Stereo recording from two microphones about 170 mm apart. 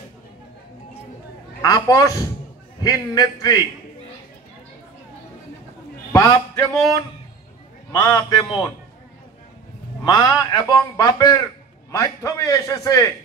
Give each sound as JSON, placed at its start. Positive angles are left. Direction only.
{"t": 1.6, "sound": "a man's voice", "side_deg": 20}
{"t": 6.1, "sound": "a man's voice", "side_deg": 20}
{"t": 7.9, "sound": "a man's voice", "side_deg": 20}
{"t": 10.0, "sound": "a man's voice", "side_deg": 20}